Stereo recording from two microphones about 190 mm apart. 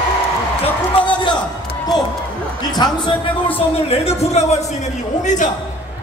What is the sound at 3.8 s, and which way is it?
Speech, 35° left (ahead or behind).